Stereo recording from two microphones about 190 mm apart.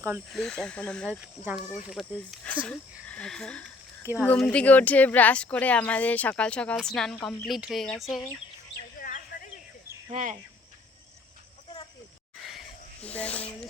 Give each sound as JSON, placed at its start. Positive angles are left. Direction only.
{"t": 0.3, "sound": "speech", "side_deg": 0}
{"t": 4.0, "sound": "speech", "side_deg": -10}
{"t": 4.3, "sound": "speech", "side_deg": 5}
{"t": 9.0, "sound": "a sound", "side_deg": 45}
{"t": 10.1, "sound": "speech", "side_deg": -40}
{"t": 12.4, "sound": "a sound", "side_deg": 0}